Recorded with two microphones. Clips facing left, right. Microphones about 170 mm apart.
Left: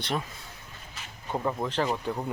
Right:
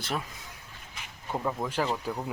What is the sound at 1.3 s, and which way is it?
Speech, 5° left (ahead or behind).